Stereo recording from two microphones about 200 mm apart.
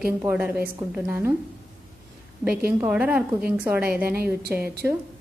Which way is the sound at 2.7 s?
10° right (ahead or behind).